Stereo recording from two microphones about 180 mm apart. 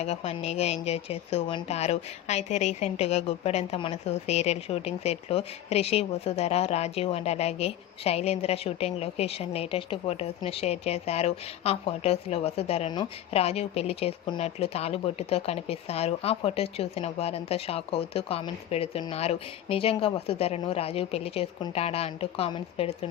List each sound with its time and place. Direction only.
0.0 s speech: 35° left (ahead or behind)